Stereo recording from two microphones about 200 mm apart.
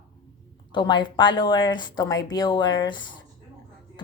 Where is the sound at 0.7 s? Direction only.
25° left (ahead or behind).